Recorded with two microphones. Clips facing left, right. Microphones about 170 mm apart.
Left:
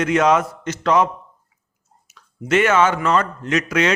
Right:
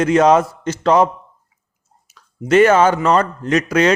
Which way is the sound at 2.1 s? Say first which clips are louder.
Right 5 dB; 35° right (ahead or behind).